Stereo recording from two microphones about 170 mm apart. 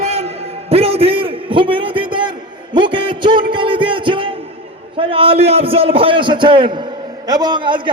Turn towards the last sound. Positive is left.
turn(degrees=-30)  # may be behind; listen again after turning